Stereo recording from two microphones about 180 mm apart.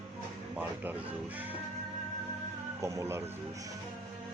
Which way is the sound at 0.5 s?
10° right (ahead or behind).